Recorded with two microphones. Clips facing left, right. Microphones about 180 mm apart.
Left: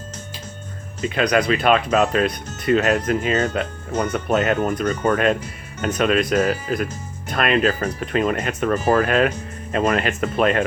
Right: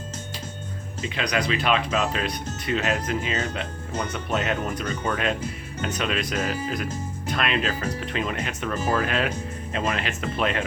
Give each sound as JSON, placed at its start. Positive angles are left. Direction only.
{"t": 1.0, "sound": "speech", "side_deg": 50}